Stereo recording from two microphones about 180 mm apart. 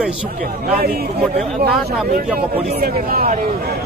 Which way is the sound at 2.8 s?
55° right (ahead or behind).